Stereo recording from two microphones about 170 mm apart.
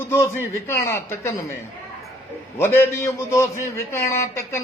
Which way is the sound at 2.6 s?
15° left (ahead or behind).